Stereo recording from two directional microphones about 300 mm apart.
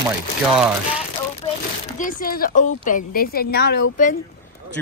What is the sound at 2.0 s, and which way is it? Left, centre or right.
Speech, left.